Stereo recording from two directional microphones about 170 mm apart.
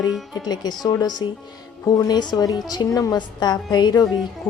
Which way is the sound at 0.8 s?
25° left (ahead or behind).